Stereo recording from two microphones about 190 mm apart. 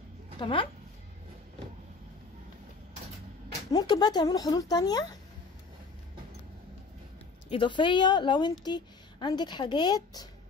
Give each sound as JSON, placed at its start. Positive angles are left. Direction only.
{"t": 0.4, "sound": "a woman's voice", "side_deg": 25}
{"t": 3.7, "sound": "a woman's voice", "side_deg": 20}
{"t": 7.4, "sound": "a woman's voice", "side_deg": 25}